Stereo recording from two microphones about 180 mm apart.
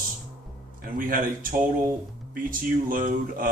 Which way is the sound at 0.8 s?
50° right (ahead or behind).